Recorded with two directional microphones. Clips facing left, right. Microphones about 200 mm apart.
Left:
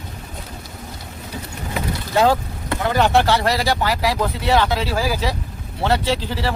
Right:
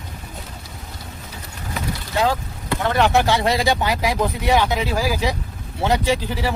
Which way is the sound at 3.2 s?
20° right (ahead or behind).